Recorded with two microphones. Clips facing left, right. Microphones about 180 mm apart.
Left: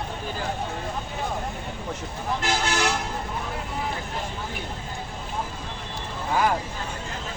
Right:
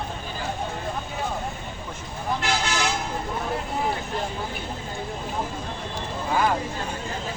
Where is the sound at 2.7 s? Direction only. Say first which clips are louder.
Left 1 dB; 60° left (ahead or behind).